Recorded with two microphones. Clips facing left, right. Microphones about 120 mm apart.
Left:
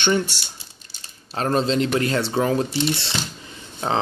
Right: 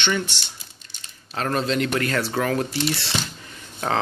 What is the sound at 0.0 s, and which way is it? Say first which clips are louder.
Speech: left 4 dB; 40° left (ahead or behind).